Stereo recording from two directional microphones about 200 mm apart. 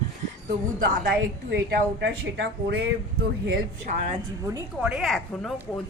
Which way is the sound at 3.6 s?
35° right (ahead or behind).